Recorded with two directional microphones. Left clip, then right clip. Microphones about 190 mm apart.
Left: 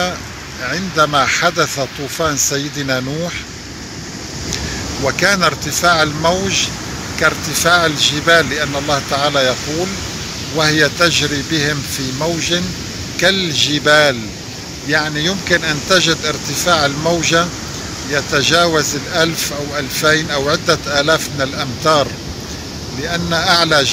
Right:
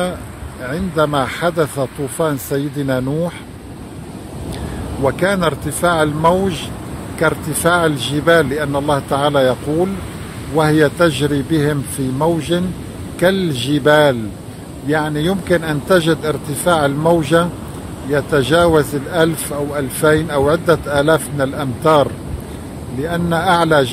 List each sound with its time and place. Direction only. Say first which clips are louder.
0.7 s speech: left 2 dB; 40° right (ahead or behind)
5.2 s speech: left 6 dB; 45° right (ahead or behind)
23.0 s speech: left 1 dB; 50° right (ahead or behind)